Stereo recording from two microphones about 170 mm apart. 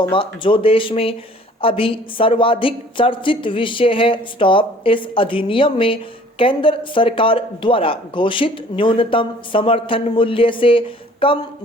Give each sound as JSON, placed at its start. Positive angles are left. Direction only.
{"t": 0.0, "sound": "speech", "side_deg": 30}